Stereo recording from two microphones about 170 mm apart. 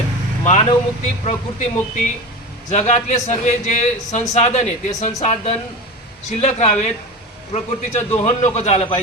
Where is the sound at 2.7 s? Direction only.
40° left (ahead or behind).